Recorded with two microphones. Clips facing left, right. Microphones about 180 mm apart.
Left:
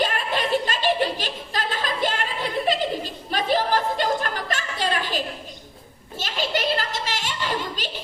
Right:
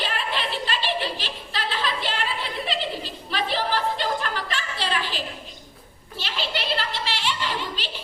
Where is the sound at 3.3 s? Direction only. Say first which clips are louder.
Left 4 dB; 45° left (ahead or behind).